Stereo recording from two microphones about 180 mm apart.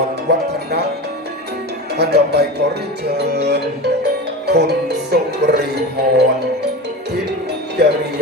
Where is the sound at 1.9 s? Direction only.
65° right (ahead or behind).